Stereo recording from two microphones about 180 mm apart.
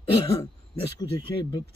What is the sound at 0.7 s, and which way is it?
Speech, 25° left (ahead or behind).